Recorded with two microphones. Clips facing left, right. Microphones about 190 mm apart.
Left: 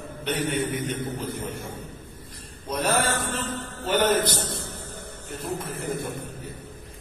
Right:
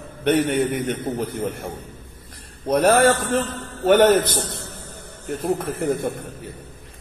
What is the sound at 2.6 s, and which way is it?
A man's voice, 60° right (ahead or behind).